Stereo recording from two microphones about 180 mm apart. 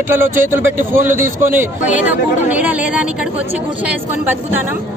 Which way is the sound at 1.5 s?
10° right (ahead or behind).